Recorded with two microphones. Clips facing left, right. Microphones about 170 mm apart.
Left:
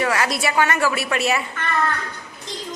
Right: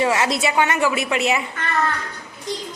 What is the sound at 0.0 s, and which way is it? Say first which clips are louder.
A woman's voice: right 2 dB; 25° right (ahead or behind).